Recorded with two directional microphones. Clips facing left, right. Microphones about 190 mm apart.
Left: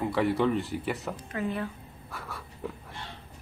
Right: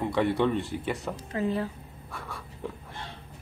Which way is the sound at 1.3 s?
30° right (ahead or behind).